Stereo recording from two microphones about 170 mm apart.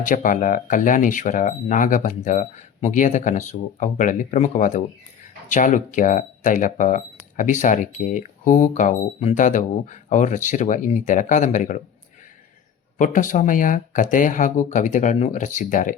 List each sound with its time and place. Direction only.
0.0 s speech: 50° left (ahead or behind)
13.0 s speech: 50° left (ahead or behind)